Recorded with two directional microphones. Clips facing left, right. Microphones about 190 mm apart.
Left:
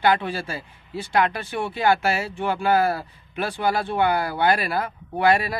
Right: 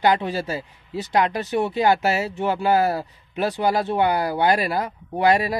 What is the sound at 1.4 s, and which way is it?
Speech, 40° right (ahead or behind).